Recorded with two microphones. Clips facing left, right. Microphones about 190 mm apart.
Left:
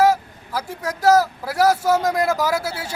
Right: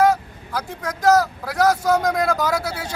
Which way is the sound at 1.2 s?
5° left (ahead or behind).